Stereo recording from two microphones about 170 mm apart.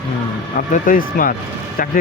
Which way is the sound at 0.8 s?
55° left (ahead or behind).